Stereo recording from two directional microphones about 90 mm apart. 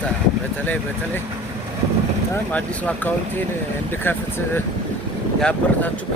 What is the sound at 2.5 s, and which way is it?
Speech, 20° left (ahead or behind).